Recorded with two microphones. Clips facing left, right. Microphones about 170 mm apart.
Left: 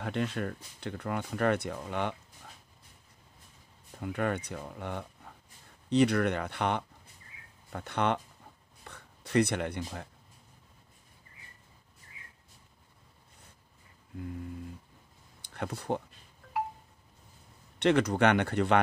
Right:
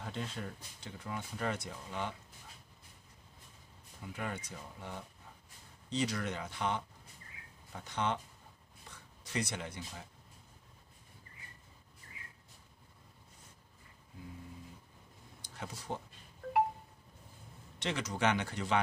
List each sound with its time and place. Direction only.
0.0 s speech: 65° left (ahead or behind)
4.0 s speech: 65° left (ahead or behind)
15.5 s speech: 60° left (ahead or behind)
17.7 s speech: 60° left (ahead or behind)